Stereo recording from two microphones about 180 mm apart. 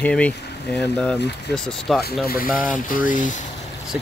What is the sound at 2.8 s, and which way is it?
Speech, 45° left (ahead or behind).